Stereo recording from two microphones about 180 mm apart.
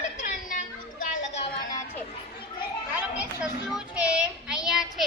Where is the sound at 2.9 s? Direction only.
10° right (ahead or behind).